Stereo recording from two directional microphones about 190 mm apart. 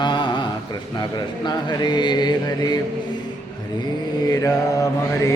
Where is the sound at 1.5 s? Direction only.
25° left (ahead or behind).